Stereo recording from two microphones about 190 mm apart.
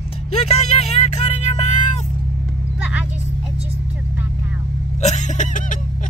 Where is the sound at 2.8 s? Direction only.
5° right (ahead or behind).